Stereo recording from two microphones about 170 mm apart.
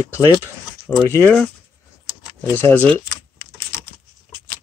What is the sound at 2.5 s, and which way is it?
Speech, 10° left (ahead or behind).